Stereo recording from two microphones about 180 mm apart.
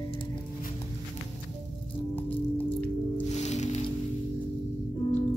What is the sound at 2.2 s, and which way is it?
Music, 10° left (ahead or behind).